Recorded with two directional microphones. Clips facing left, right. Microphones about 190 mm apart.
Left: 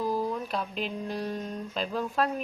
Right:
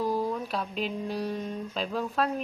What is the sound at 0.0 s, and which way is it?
Speech, centre (ahead or behind).